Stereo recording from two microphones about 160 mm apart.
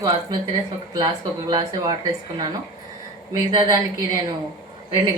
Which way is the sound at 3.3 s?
20° right (ahead or behind).